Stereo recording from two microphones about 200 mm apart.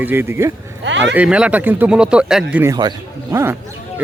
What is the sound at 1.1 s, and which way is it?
Speech, 5° right (ahead or behind).